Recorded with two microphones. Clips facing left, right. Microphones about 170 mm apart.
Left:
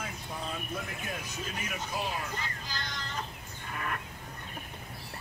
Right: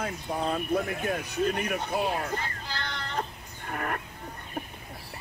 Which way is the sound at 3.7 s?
50° right (ahead or behind).